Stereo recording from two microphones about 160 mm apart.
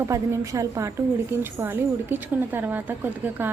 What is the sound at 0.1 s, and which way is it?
A woman's voice, 20° right (ahead or behind).